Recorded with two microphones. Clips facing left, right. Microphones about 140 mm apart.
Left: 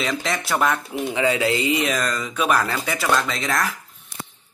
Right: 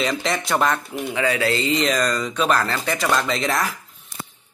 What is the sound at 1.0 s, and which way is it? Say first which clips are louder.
Speech: left 1 dB; 20° left (ahead or behind).